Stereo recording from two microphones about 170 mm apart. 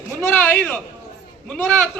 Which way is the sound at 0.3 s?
10° left (ahead or behind).